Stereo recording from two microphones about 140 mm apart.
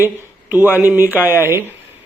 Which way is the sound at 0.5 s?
15° right (ahead or behind).